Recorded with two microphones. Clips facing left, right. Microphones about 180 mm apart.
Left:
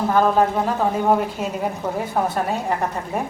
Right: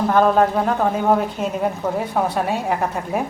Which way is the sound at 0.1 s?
5° left (ahead or behind).